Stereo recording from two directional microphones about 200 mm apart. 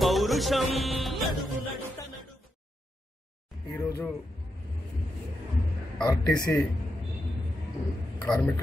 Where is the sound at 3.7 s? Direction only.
10° left (ahead or behind).